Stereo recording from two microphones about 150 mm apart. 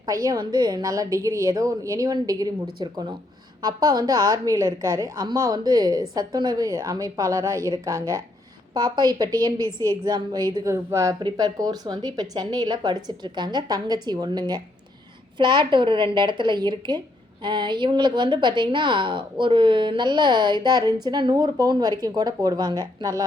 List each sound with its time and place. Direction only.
0.0 s a woman's voice: 25° right (ahead or behind)